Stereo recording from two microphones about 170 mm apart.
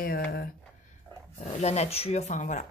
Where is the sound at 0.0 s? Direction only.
60° left (ahead or behind).